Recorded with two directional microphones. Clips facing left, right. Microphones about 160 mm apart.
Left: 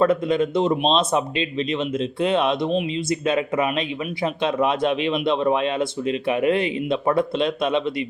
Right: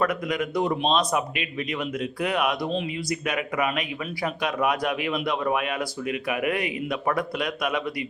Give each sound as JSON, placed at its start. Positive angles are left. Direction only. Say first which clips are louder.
{"t": 0.0, "sound": "speech", "louder": "left 7 dB", "side_deg": 25}